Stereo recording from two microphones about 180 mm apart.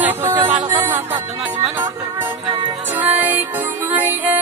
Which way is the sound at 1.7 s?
20° right (ahead or behind).